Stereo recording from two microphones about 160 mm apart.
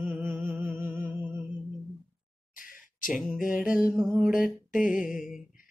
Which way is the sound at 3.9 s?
5° right (ahead or behind).